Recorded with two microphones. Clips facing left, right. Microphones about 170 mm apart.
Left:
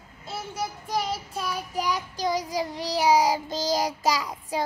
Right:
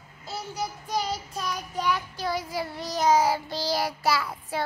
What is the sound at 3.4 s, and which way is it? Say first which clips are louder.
Child singing: left 2 dB; 45° left (ahead or behind).